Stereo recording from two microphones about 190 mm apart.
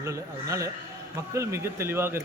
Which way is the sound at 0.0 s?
15° right (ahead or behind).